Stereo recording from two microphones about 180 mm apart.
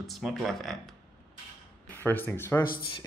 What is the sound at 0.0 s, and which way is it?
Speech, centre (ahead or behind).